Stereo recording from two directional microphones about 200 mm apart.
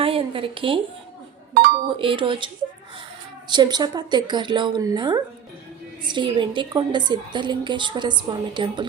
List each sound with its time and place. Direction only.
0.0 s a sound: 25° right (ahead or behind)
2.0 s a woman's voice: 25° right (ahead or behind)
3.5 s a woman's voice: 20° right (ahead or behind)